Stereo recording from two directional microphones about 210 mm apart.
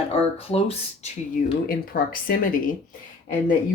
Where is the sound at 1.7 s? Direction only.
45° left (ahead or behind).